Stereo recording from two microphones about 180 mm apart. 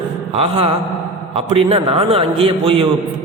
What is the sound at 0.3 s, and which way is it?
A man's voice, 30° right (ahead or behind).